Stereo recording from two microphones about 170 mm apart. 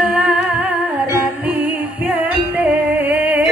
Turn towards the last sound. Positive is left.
turn(degrees=-10)  # may be behind; listen again after turning